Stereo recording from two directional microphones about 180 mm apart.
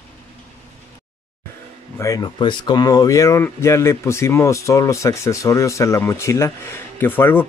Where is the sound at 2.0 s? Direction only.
20° left (ahead or behind).